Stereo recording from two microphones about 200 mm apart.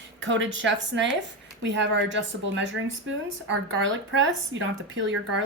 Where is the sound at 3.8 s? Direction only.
70° right (ahead or behind).